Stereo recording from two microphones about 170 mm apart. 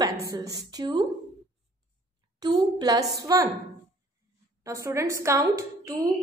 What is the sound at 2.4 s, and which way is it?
A woman's voice, 25° right (ahead or behind).